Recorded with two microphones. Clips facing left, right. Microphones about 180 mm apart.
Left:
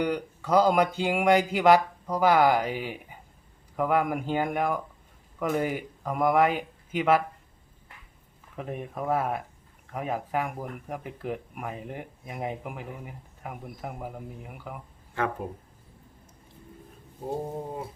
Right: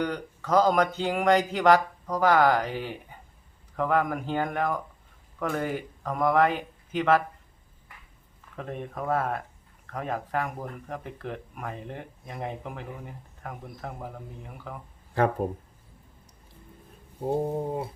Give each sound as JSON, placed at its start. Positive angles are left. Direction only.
{"t": 0.0, "sound": "speech", "side_deg": 10}
{"t": 8.5, "sound": "speech", "side_deg": 10}
{"t": 15.1, "sound": "speech", "side_deg": -40}